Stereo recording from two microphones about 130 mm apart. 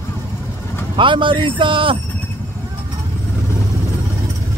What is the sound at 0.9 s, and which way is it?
Speech, 40° right (ahead or behind).